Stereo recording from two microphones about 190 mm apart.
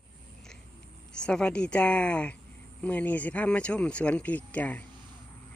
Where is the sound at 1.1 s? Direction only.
5° left (ahead or behind).